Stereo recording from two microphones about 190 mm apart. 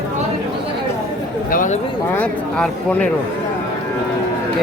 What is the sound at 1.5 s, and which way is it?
Speech, 40° left (ahead or behind).